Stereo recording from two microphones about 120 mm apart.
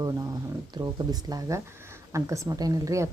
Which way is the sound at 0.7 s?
35° right (ahead or behind).